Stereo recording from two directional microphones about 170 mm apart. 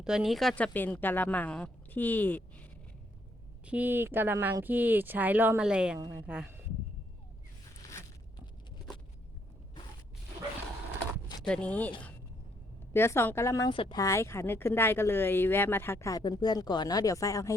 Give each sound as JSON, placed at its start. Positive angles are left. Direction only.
{"t": 0.0, "sound": "speech", "side_deg": -5}
{"t": 3.7, "sound": "speech", "side_deg": -10}
{"t": 7.8, "sound": "a sound", "side_deg": 15}
{"t": 11.4, "sound": "speech", "side_deg": 5}
{"t": 13.7, "sound": "speech", "side_deg": 30}
{"t": 14.0, "sound": "speech", "side_deg": 15}